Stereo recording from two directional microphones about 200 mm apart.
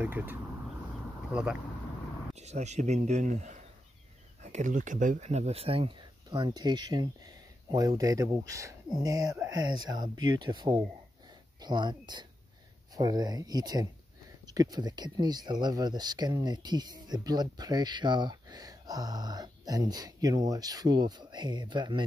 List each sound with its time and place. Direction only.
0.0 s speech: 10° right (ahead or behind)
2.3 s speech: 35° right (ahead or behind)